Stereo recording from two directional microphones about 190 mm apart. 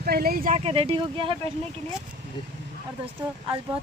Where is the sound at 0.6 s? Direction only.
30° right (ahead or behind).